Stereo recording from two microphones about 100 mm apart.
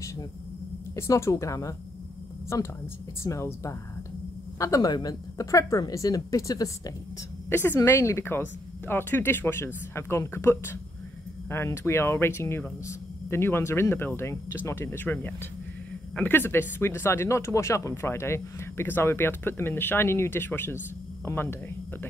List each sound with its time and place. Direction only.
0.9 s a woman's voice: 30° left (ahead or behind)
7.4 s speech: 20° left (ahead or behind)